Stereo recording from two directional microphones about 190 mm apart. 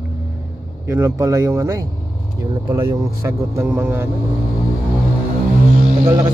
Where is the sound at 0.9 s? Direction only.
15° right (ahead or behind).